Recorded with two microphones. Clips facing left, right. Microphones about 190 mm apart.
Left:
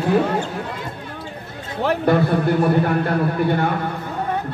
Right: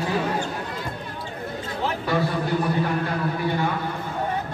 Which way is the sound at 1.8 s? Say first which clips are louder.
Left 7 dB; 60° left (ahead or behind).